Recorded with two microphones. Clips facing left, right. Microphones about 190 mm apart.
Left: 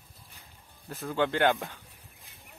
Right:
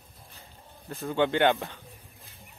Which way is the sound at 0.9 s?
Centre (ahead or behind).